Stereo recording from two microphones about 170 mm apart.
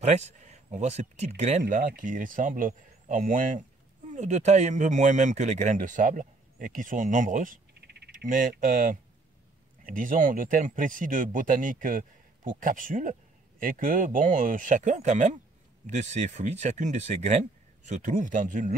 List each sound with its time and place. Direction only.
0.0 s speech: 40° right (ahead or behind)
1.9 s speech: 50° right (ahead or behind)
7.7 s frog: 70° right (ahead or behind); by 8.9 s 50° right (ahead or behind)
9.8 s speech: 55° right (ahead or behind)